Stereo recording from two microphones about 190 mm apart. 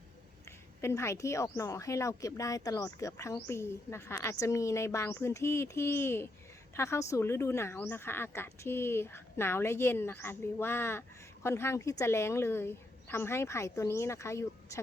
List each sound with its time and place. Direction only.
0.8 s speech: 15° left (ahead or behind)